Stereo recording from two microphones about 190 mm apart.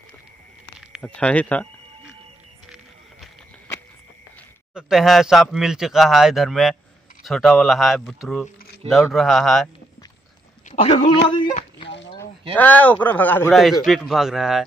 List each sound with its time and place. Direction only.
1.0 s speech: 5° left (ahead or behind)
4.7 s a man's voice: centre (ahead or behind)
10.7 s speech: 35° left (ahead or behind)
12.5 s a man's voice: 10° left (ahead or behind)